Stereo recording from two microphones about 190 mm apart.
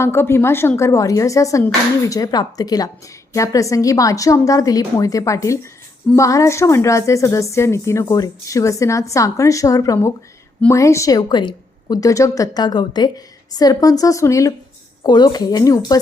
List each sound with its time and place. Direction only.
0.0 s a woman's voice: 15° left (ahead or behind)